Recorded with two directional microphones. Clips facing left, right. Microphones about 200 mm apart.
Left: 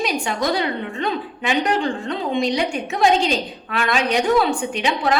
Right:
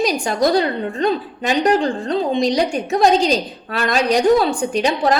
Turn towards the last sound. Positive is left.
turn(degrees=-40)  # may be behind; listen again after turning